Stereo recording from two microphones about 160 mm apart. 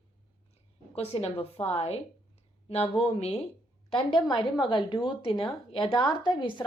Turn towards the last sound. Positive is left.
turn(degrees=30)  # may be behind; listen again after turning